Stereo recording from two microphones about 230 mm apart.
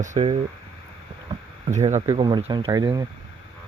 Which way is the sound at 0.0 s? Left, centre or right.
Right.